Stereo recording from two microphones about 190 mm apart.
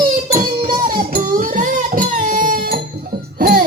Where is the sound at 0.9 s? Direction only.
45° right (ahead or behind).